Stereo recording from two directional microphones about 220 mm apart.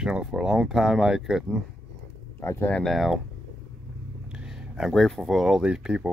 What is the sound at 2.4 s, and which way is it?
Speech, 10° left (ahead or behind).